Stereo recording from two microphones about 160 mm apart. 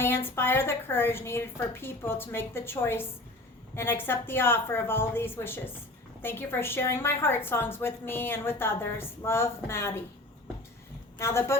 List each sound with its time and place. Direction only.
0.0 s a woman's voice: 15° left (ahead or behind)
11.2 s a woman's voice: 15° left (ahead or behind)